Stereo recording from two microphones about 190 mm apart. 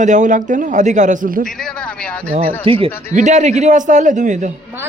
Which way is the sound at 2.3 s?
30° right (ahead or behind).